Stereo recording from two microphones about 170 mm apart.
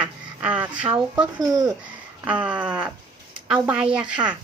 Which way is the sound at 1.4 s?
20° right (ahead or behind).